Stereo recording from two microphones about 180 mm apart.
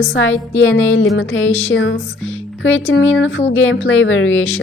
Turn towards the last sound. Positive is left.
turn(degrees=90)